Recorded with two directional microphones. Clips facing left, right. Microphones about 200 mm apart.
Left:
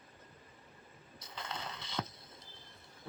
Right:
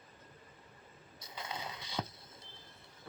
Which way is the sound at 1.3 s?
10° right (ahead or behind).